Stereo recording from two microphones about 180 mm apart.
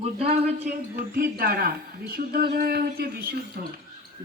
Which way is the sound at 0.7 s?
50° right (ahead or behind).